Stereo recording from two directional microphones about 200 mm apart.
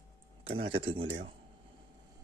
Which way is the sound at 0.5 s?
25° right (ahead or behind).